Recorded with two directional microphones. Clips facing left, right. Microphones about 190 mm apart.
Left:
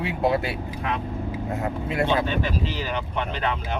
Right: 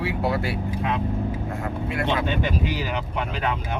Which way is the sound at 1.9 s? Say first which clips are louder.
Left 2 dB; 25° left (ahead or behind).